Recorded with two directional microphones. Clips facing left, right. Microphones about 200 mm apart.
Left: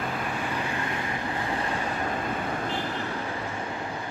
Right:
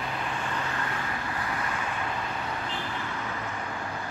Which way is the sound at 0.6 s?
20° left (ahead or behind).